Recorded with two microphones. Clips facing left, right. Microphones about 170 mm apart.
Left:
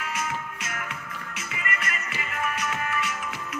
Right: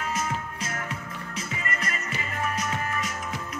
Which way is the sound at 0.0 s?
35° right (ahead or behind).